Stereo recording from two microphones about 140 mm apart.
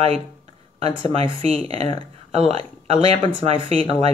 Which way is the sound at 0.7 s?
45° right (ahead or behind).